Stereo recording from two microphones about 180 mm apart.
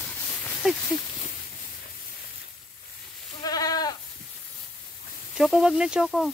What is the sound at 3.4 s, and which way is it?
Goat, 20° left (ahead or behind).